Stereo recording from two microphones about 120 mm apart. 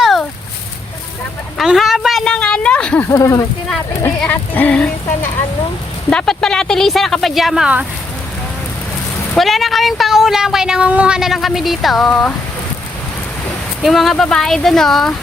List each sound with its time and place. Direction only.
0.0 s a sound: centre (ahead or behind)
1.5 s a woman's voice: centre (ahead or behind)
3.1 s speech: 25° left (ahead or behind)
4.2 s speech: 15° left (ahead or behind)
6.1 s speech: 5° left (ahead or behind)
9.4 s speech: centre (ahead or behind)
13.8 s speech: centre (ahead or behind)